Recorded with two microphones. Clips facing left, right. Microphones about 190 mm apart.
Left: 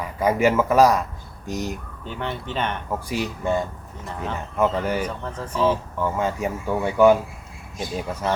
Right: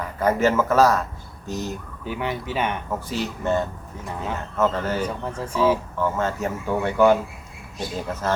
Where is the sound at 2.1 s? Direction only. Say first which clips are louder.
Right 2 dB; 10° right (ahead or behind).